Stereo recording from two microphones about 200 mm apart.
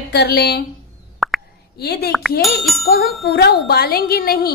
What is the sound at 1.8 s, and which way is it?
Speech, 55° left (ahead or behind).